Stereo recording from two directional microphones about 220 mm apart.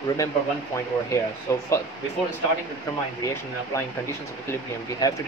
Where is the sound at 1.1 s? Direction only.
15° left (ahead or behind).